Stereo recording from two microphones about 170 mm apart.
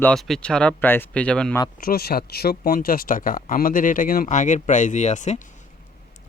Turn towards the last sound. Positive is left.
turn(degrees=45)  # may be behind; listen again after turning